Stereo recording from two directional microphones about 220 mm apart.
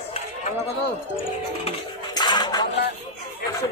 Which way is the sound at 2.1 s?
20° left (ahead or behind).